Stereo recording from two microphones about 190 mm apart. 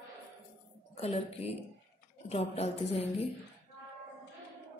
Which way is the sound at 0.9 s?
30° left (ahead or behind).